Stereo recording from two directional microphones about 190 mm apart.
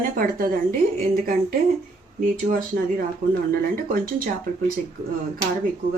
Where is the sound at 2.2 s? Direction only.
45° right (ahead or behind).